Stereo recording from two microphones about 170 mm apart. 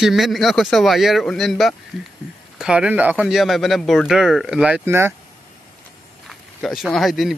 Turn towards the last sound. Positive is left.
turn(degrees=0)  # may be behind; listen again after turning